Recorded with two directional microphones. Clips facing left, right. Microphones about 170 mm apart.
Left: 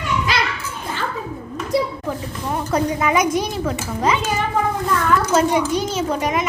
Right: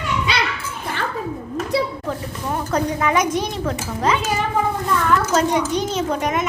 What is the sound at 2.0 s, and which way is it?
A woman's voice, 10° left (ahead or behind).